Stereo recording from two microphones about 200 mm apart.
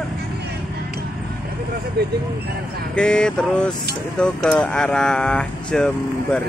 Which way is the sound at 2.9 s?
5° left (ahead or behind).